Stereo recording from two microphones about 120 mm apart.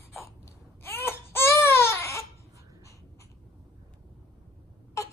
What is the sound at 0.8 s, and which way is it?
Baby cry, 20° left (ahead or behind).